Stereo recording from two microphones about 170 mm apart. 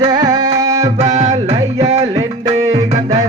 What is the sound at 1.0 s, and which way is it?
Music, 40° right (ahead or behind).